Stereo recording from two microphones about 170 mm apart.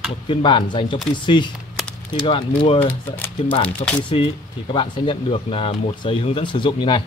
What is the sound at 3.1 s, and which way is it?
Speech, 10° left (ahead or behind).